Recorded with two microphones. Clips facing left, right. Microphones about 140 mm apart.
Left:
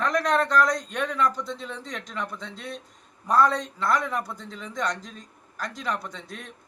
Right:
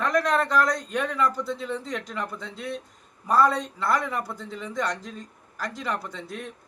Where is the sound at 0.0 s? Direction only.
Centre (ahead or behind).